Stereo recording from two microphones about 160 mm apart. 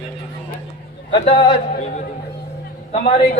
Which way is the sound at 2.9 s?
40° left (ahead or behind).